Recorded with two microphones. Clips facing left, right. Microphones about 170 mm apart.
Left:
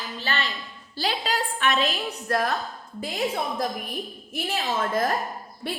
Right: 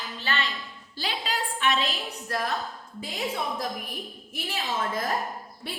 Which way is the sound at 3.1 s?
40° left (ahead or behind).